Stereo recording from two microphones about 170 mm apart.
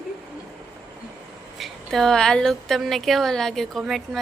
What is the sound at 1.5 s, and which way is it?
A woman's voice, centre (ahead or behind).